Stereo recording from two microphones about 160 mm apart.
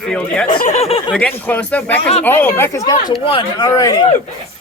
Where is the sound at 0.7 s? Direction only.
40° left (ahead or behind).